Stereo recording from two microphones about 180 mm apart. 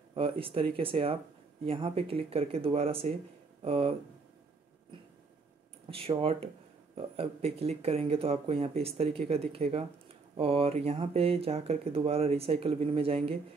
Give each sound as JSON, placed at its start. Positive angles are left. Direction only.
{"t": 0.1, "sound": "speech", "side_deg": -30}
{"t": 5.9, "sound": "speech", "side_deg": -30}